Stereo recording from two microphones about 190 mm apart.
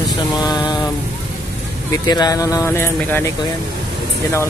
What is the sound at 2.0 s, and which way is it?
Speech, 20° left (ahead or behind).